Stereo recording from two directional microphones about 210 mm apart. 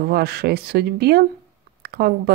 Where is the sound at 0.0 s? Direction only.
50° right (ahead or behind).